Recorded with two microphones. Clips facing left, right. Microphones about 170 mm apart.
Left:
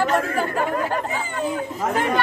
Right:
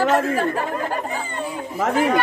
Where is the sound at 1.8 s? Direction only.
75° right (ahead or behind).